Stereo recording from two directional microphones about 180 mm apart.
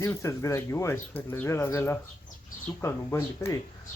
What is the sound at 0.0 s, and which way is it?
Speech, 15° left (ahead or behind).